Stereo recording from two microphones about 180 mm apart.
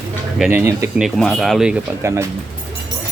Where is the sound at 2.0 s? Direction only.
15° right (ahead or behind).